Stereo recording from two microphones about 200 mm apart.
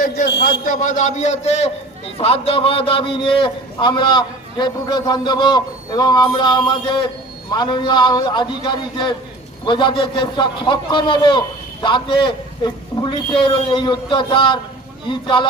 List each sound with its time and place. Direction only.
0.0 s speech: 50° left (ahead or behind)
0.7 s a man's voice: 40° left (ahead or behind); by 15.4 s 25° left (ahead or behind)